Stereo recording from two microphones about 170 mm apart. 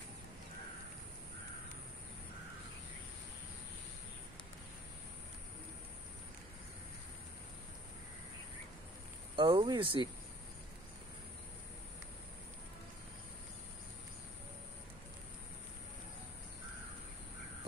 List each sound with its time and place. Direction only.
9.3 s speech: 30° right (ahead or behind)